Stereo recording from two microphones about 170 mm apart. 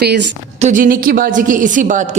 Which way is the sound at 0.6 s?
50° right (ahead or behind).